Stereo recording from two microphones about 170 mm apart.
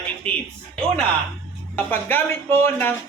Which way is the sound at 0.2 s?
35° right (ahead or behind).